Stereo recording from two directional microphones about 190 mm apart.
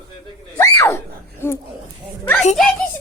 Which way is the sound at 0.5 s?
15° left (ahead or behind).